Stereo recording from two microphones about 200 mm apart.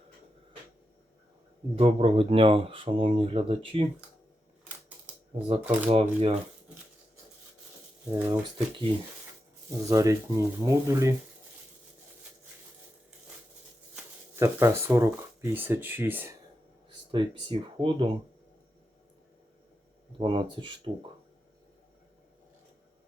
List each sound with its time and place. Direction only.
1.7 s speech: 30° right (ahead or behind)
5.5 s speech: 10° right (ahead or behind)
5.9 s speech: 30° right (ahead or behind)
8.1 s speech: 15° right (ahead or behind)
9.9 s speech: 15° right (ahead or behind)
13.9 s speech: 15° right (ahead or behind)
17.1 s speech: 25° right (ahead or behind)
20.1 s speech: 25° right (ahead or behind)